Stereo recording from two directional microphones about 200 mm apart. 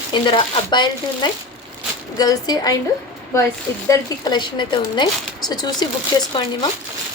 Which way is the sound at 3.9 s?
20° left (ahead or behind).